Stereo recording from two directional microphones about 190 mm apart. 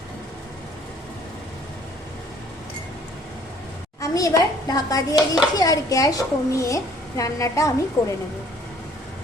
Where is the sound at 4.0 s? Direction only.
15° left (ahead or behind).